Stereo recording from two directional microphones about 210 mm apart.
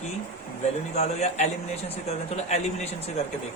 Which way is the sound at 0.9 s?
30° left (ahead or behind).